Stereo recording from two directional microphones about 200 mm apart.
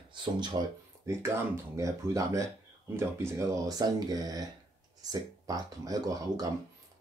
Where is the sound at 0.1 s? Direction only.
25° right (ahead or behind).